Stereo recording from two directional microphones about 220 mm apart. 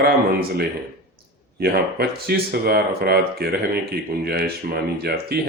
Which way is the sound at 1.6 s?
45° right (ahead or behind).